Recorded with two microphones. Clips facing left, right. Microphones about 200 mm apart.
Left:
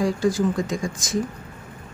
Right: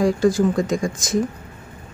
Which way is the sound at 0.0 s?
50° right (ahead or behind).